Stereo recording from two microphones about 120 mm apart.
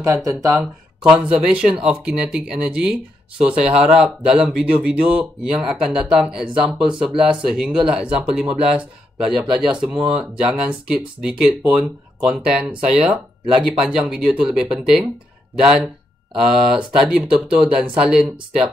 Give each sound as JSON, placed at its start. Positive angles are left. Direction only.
{"t": 0.0, "sound": "speech", "side_deg": -25}
{"t": 1.0, "sound": "speech", "side_deg": -10}